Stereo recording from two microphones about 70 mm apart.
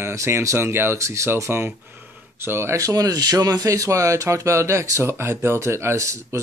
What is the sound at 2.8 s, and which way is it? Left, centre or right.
Speech, right.